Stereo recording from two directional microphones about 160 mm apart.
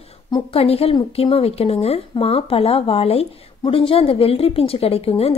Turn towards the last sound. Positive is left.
turn(degrees=40)  # may be behind; listen again after turning